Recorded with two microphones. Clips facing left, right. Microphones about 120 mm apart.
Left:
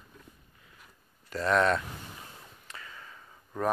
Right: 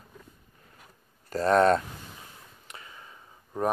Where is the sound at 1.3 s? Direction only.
40° right (ahead or behind).